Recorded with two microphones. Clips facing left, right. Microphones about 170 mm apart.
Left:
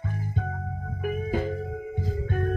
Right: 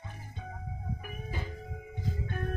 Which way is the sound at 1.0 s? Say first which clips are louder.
Left 19 dB; 55° left (ahead or behind).